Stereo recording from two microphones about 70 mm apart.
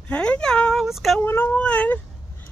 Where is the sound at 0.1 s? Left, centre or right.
Centre.